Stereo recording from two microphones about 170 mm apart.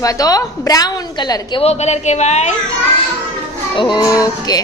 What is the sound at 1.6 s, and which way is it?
Speech, 40° left (ahead or behind).